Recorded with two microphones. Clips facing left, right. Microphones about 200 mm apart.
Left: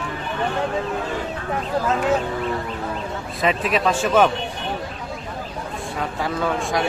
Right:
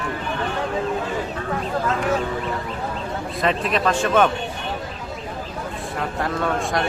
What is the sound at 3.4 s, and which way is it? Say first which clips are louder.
Speech: left 1 dB; 5° left (ahead or behind).